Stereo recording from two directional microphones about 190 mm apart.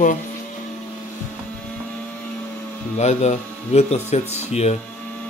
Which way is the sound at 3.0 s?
35° left (ahead or behind).